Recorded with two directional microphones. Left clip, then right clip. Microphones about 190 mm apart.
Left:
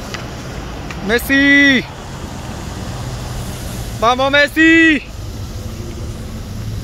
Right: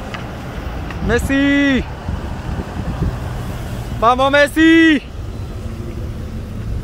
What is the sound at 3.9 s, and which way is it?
Speech, 5° right (ahead or behind).